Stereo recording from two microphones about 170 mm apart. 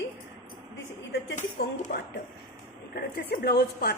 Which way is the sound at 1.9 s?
60° left (ahead or behind).